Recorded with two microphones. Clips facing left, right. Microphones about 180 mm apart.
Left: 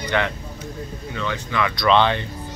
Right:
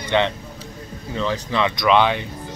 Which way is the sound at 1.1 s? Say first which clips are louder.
Right 3 dB; 30° right (ahead or behind).